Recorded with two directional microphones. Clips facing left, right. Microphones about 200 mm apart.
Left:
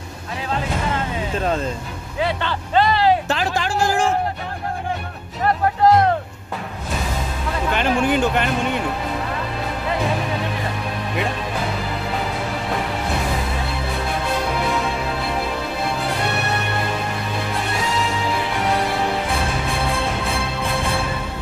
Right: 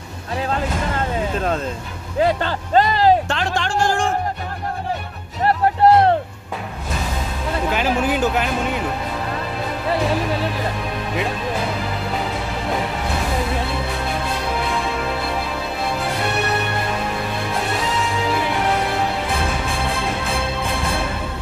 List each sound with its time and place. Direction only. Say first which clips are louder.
2.1 s speech: right 4 dB; 40° right (ahead or behind)
3.3 s a sound: left 1 dB; 5° left (ahead or behind)
5.8 s music: right 1 dB; 30° right (ahead or behind)
7.7 s speech: left 2 dB; 5° right (ahead or behind)